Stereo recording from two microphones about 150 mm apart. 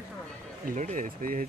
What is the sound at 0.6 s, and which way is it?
Speech, 60° right (ahead or behind).